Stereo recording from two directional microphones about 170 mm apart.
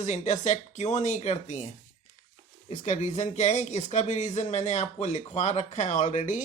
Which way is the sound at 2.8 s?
45° left (ahead or behind).